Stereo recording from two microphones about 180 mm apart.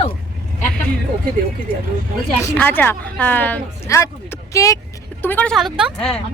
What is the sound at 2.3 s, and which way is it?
A woman's voice, 10° left (ahead or behind).